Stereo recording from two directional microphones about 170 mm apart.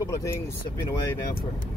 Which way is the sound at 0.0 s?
20° left (ahead or behind).